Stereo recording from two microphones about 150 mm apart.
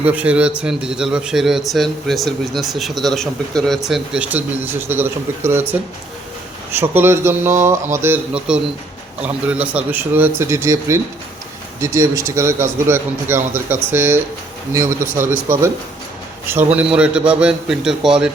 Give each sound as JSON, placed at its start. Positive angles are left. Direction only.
{"t": 0.0, "sound": "a man's voice", "side_deg": -10}
{"t": 6.7, "sound": "a man's voice", "side_deg": -15}
{"t": 16.7, "sound": "a man's voice", "side_deg": -5}